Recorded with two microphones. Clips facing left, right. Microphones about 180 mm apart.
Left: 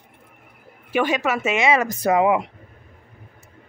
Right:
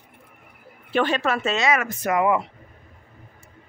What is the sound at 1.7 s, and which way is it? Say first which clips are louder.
Speech: left 6 dB; 35° left (ahead or behind).